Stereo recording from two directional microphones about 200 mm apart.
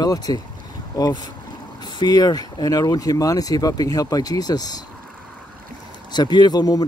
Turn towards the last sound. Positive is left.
turn(degrees=20)  # may be behind; listen again after turning